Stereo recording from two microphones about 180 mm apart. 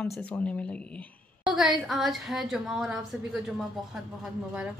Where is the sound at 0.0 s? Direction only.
10° left (ahead or behind).